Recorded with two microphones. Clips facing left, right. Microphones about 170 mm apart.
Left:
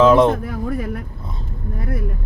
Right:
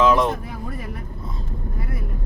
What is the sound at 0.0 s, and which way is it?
Speech, 30° left (ahead or behind).